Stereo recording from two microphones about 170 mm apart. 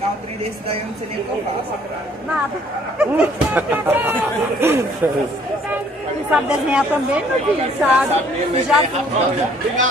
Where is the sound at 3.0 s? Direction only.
10° right (ahead or behind).